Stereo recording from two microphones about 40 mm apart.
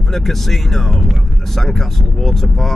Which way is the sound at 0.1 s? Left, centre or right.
Centre.